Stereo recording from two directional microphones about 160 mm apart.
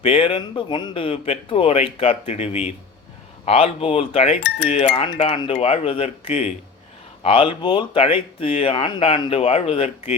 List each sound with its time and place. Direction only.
0.0 s speech: 35° left (ahead or behind)